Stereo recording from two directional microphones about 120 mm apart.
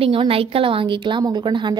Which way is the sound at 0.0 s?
50° right (ahead or behind).